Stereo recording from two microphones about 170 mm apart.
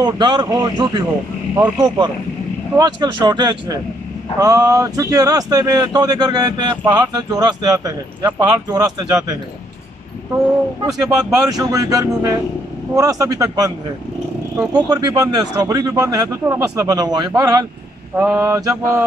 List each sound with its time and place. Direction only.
0.0 s speech: 25° right (ahead or behind)
10.9 s speech: 20° right (ahead or behind)
18.1 s mantra: 10° right (ahead or behind)